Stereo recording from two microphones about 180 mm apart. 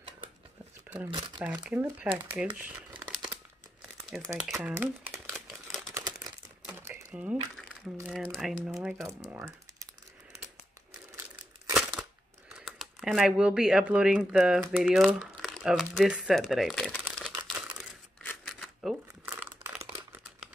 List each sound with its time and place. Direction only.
1.4 s speech: 5° right (ahead or behind)
4.1 s speech: centre (ahead or behind)
5.3 s a sound: centre (ahead or behind)
8.0 s speech: centre (ahead or behind)
9.3 s speech: 15° right (ahead or behind)
11.7 s crumpling: 5° right (ahead or behind)
14.8 s speech: 5° right (ahead or behind)
17.4 s crumpling: 5° right (ahead or behind)